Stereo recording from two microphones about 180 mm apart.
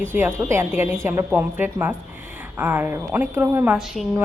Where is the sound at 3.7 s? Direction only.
Centre (ahead or behind).